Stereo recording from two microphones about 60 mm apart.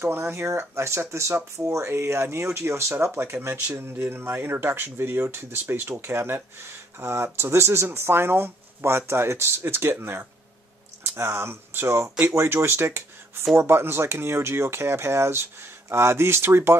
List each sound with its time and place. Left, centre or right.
0.0 s speech: right
3.3 s speech: right
3.7 s speech: right